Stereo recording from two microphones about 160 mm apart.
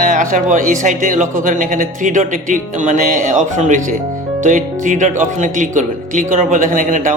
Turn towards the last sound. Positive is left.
turn(degrees=-55)  # may be behind; listen again after turning